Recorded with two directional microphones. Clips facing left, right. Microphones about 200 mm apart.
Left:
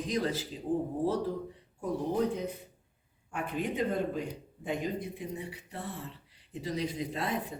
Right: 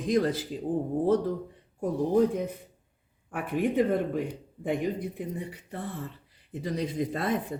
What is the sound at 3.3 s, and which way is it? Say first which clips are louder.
A man's voice: right 7 dB; 55° right (ahead or behind).